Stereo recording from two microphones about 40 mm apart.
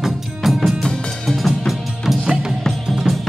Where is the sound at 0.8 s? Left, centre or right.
Centre.